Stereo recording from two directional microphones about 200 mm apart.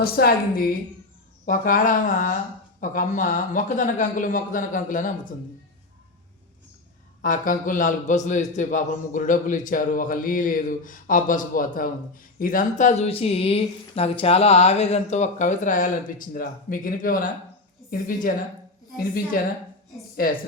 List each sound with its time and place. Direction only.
0.0 s a woman's voice: 50° left (ahead or behind)
7.2 s a man's voice: 40° left (ahead or behind)